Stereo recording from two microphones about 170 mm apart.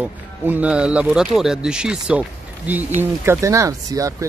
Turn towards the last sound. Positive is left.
turn(degrees=-20)  # may be behind; listen again after turning